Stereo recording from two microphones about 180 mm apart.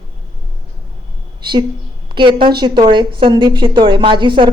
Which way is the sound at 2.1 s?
25° right (ahead or behind).